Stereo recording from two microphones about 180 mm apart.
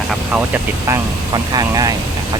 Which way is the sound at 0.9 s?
20° right (ahead or behind).